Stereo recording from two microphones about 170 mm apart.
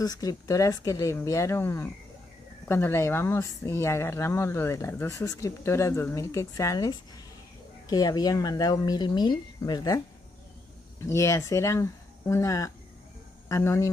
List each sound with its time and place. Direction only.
0.0 s speech: 20° left (ahead or behind)
11.1 s speech: 15° left (ahead or behind)